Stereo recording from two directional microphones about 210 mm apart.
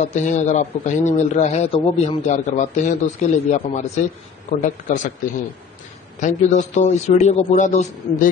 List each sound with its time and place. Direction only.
0.1 s a man's voice: 35° left (ahead or behind)
6.2 s a man's voice: 35° left (ahead or behind)